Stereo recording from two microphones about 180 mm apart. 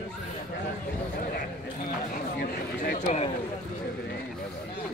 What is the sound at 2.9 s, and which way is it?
Speech, 40° left (ahead or behind).